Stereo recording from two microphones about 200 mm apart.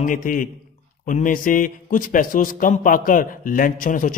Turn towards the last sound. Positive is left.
turn(degrees=40)  # may be behind; listen again after turning